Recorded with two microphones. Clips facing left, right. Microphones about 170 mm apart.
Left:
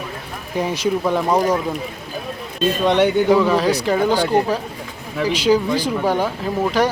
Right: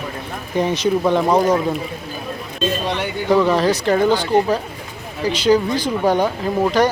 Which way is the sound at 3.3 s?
5° left (ahead or behind).